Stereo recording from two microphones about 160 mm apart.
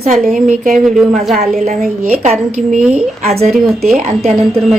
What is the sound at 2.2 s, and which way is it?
A woman's voice, 50° right (ahead or behind).